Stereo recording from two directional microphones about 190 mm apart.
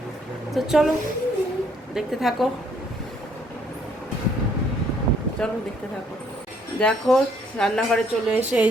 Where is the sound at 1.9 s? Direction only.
Centre (ahead or behind).